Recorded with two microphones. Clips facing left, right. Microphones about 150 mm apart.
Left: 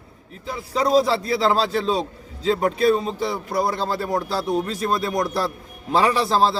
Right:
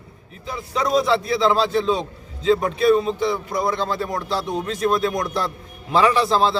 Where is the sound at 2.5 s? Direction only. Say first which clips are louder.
Right 2 dB; 35° left (ahead or behind).